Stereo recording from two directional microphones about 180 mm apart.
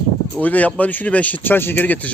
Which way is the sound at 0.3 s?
10° left (ahead or behind).